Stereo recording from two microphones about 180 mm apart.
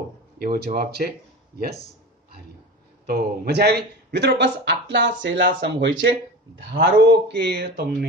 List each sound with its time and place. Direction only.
0.4 s speech: 55° right (ahead or behind)
3.1 s speech: 60° right (ahead or behind); by 6.1 s 85° right
6.7 s speech: 75° right (ahead or behind)